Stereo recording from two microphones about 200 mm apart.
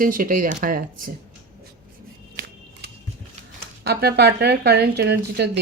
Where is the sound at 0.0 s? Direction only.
45° right (ahead or behind).